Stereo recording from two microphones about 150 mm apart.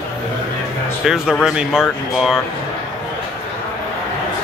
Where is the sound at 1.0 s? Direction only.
5° right (ahead or behind).